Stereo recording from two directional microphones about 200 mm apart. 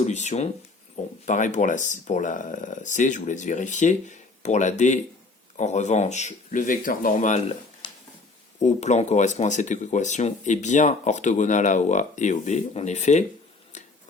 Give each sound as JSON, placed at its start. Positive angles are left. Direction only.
{"t": 0.0, "sound": "speech", "side_deg": 35}
{"t": 8.5, "sound": "speech", "side_deg": 35}
{"t": 13.7, "sound": "a sound", "side_deg": 35}